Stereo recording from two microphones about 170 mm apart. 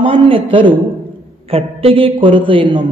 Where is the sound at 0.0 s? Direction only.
30° right (ahead or behind).